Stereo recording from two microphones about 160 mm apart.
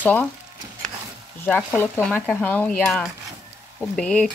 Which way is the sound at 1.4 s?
10° left (ahead or behind).